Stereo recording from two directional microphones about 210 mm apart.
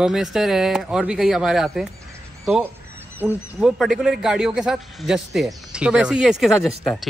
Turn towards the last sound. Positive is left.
turn(degrees=0)  # may be behind; listen again after turning